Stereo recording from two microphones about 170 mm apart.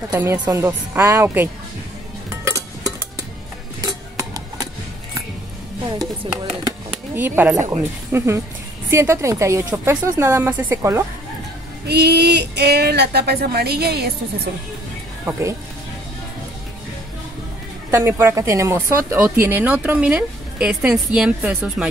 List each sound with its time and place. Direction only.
0.1 s a woman's voice: 15° right (ahead or behind)
2.2 s music: 15° right (ahead or behind)
3.8 s a sound: 20° right (ahead or behind)
6.2 s speech: 30° right (ahead or behind)
7.2 s a woman's voice: 10° right (ahead or behind)
11.9 s speech: 75° right (ahead or behind)
17.9 s a woman's voice: 15° right (ahead or behind)